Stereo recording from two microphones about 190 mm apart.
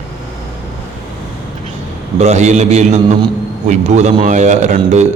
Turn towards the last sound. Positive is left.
turn(degrees=-40)  # may be behind; listen again after turning